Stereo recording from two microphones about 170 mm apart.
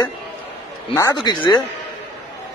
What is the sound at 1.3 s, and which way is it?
Speech, 25° left (ahead or behind).